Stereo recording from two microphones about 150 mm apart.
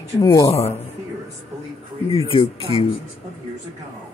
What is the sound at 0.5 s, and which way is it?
Speech, 45° left (ahead or behind).